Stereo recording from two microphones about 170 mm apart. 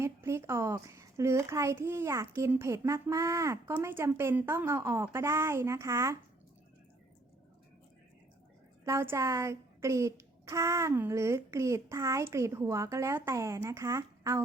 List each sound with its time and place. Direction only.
0.0 s a child's voice: 15° right (ahead or behind)
8.8 s a child's voice: 15° right (ahead or behind)